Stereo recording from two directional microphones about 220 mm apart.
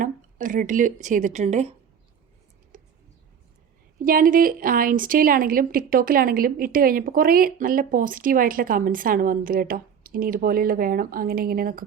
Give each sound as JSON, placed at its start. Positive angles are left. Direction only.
{"t": 0.0, "sound": "a woman's voice", "side_deg": -35}
{"t": 4.0, "sound": "a woman's voice", "side_deg": -40}